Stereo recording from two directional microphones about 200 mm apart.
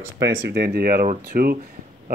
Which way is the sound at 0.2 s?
55° right (ahead or behind).